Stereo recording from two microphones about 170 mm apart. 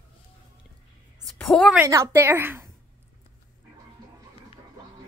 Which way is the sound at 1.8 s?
15° right (ahead or behind).